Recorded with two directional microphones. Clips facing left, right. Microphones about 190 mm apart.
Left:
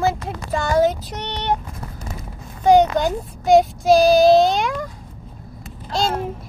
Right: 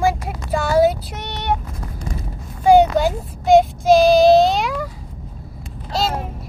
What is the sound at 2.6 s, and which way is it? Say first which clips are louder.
Child singing: right 2 dB; 10° right (ahead or behind).